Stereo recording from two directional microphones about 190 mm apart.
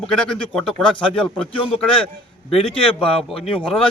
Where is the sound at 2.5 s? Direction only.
30° left (ahead or behind).